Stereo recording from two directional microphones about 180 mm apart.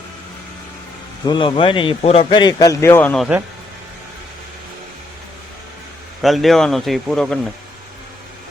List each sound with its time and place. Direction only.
1.2 s speech: 25° left (ahead or behind); by 3.2 s 10° left (ahead or behind)
6.2 s speech: centre (ahead or behind)